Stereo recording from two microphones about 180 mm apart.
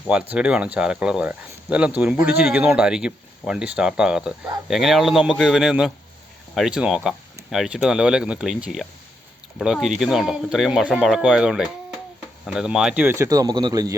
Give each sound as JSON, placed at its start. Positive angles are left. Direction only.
{"t": 0.1, "sound": "speech", "side_deg": -5}